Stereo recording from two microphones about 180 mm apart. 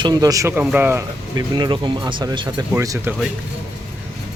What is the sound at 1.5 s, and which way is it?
Speech, 25° right (ahead or behind).